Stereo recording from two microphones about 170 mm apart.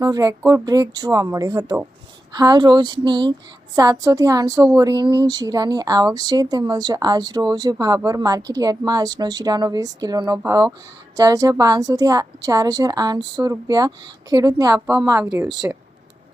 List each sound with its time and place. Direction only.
0.0 s a woman's voice: 20° right (ahead or behind)